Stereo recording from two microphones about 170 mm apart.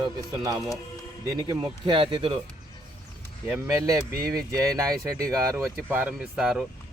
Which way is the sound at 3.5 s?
20° right (ahead or behind).